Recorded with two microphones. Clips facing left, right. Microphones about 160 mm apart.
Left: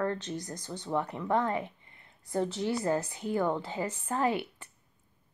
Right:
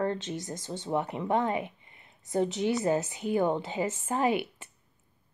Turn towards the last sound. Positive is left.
turn(degrees=-20)  # may be behind; listen again after turning